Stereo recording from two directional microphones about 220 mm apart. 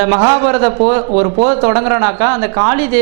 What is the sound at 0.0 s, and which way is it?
Speech, 20° right (ahead or behind).